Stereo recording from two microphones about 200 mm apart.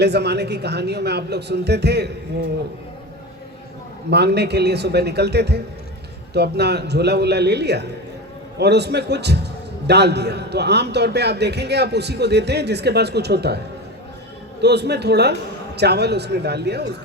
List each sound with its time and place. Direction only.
0.0 s a man's voice: 55° right (ahead or behind)
4.1 s a man's voice: 55° right (ahead or behind)
14.6 s a man's voice: 55° right (ahead or behind)